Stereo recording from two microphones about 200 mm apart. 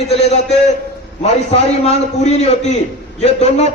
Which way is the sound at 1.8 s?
30° left (ahead or behind).